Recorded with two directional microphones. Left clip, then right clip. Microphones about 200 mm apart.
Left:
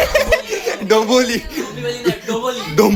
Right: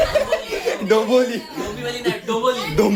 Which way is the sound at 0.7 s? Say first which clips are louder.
Left 3 dB; 15° left (ahead or behind).